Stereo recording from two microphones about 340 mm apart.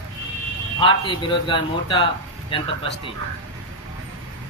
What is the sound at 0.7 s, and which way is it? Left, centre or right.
Speech, centre.